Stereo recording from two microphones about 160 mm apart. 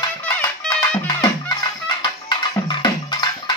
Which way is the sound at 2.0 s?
25° left (ahead or behind).